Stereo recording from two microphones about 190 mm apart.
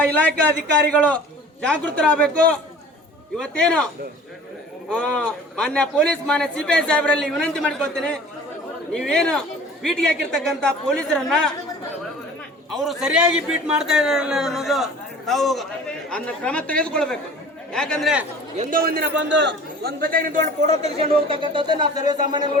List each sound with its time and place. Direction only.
0.0 s a man's voice: 10° left (ahead or behind)
4.9 s a man's voice: 5° left (ahead or behind)
12.7 s a man's voice: centre (ahead or behind)
18.5 s a man's voice: 40° right (ahead or behind); by 22.5 s 25° right (ahead or behind)